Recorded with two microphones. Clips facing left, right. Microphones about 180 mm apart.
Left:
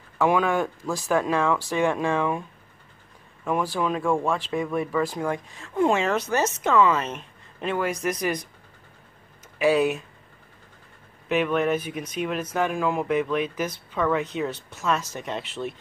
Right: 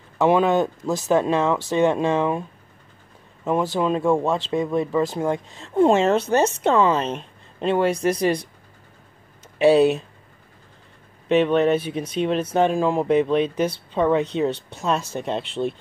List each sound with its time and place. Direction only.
0.2 s speech: 25° right (ahead or behind)
3.4 s speech: 25° right (ahead or behind)
9.6 s speech: 30° right (ahead or behind)
11.2 s speech: 30° right (ahead or behind)